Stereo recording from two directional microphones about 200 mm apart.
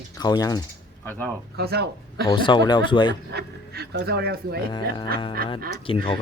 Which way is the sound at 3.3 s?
55° right (ahead or behind).